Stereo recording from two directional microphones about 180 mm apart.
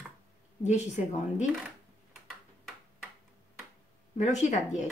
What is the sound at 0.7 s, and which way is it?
Speech, 40° left (ahead or behind).